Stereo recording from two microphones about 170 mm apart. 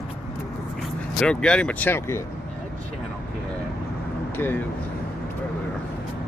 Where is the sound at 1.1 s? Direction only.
5° left (ahead or behind).